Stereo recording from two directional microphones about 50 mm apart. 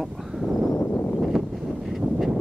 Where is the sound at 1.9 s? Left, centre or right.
Centre.